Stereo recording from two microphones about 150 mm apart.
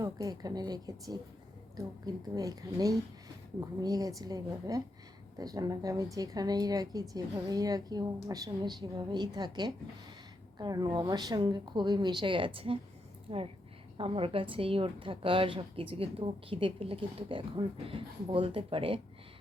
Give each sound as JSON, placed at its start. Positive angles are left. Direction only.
{"t": 0.0, "sound": "a woman's voice", "side_deg": -25}